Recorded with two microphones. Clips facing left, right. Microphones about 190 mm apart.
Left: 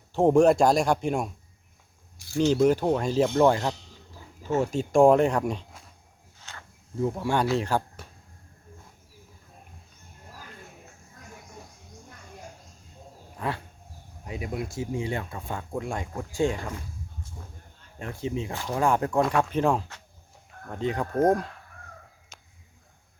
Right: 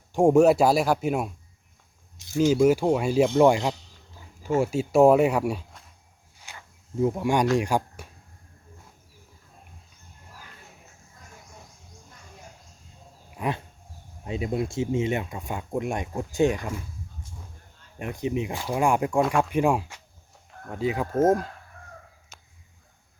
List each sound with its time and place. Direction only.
0.1 s a man's voice: 10° right (ahead or behind)
2.1 s speech: 20° right (ahead or behind)
2.5 s speech: 10° right (ahead or behind)
6.5 s a sound: 15° right (ahead or behind)
7.0 s speech: 15° right (ahead or behind)
13.3 s dog: 15° right (ahead or behind)
14.3 s speech: 25° right (ahead or behind)
18.0 s speech: 15° right (ahead or behind)